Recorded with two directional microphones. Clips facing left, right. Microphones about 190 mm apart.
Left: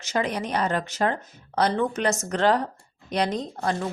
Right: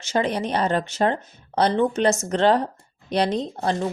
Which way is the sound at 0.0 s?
30° right (ahead or behind).